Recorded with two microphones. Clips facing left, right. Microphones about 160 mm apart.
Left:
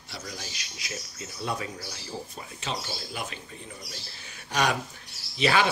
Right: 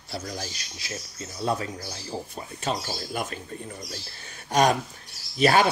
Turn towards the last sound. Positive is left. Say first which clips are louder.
# right 4 dB
turn(degrees=-45)  # may be behind; listen again after turning